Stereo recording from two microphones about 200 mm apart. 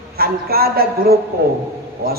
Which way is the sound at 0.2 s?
50° right (ahead or behind).